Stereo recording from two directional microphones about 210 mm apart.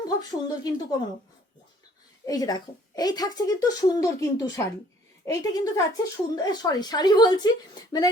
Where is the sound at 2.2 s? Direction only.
15° left (ahead or behind).